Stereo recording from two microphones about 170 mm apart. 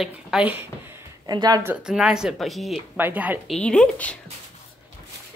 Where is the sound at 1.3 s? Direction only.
25° right (ahead or behind).